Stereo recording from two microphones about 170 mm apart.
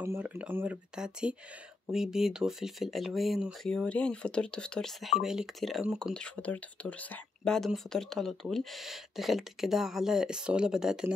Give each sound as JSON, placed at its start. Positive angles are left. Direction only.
{"t": 0.0, "sound": "speech", "side_deg": -15}